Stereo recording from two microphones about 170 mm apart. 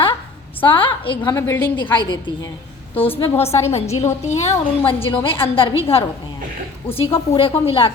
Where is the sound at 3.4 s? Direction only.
35° left (ahead or behind).